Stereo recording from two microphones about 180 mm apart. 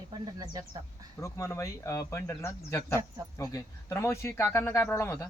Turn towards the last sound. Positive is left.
turn(degrees=15)  # may be behind; listen again after turning